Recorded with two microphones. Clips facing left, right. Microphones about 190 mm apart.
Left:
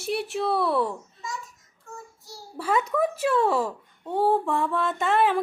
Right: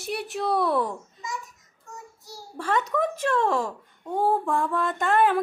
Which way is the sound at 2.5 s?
10° left (ahead or behind).